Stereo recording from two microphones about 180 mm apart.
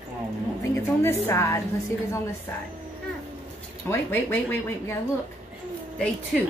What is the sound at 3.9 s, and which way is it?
Speech, 10° left (ahead or behind).